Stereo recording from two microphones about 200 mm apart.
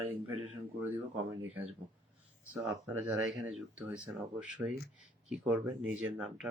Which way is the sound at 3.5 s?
Centre (ahead or behind).